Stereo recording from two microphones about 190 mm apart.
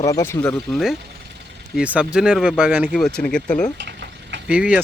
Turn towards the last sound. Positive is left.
turn(degrees=-5)  # may be behind; listen again after turning